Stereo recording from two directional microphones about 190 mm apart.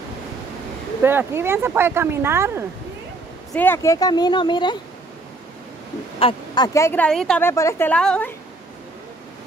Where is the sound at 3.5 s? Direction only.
10° left (ahead or behind).